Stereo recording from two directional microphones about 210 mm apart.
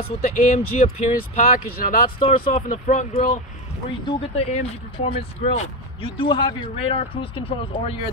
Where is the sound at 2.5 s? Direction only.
40° left (ahead or behind).